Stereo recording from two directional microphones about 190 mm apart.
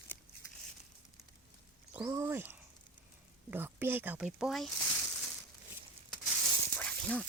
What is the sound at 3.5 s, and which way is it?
Speech, 10° right (ahead or behind).